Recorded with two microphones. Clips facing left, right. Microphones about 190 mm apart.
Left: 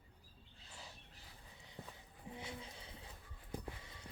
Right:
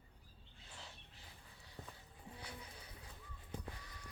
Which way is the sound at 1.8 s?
10° left (ahead or behind).